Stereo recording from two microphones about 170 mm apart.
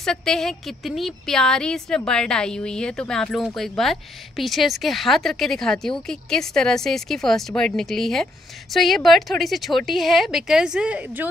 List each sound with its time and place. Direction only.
0.0 s a woman's voice: 5° left (ahead or behind)